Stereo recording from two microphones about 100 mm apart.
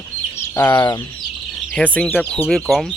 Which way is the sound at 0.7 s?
40° left (ahead or behind).